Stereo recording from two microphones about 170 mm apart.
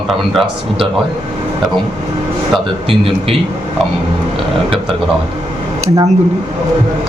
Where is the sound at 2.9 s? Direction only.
35° right (ahead or behind).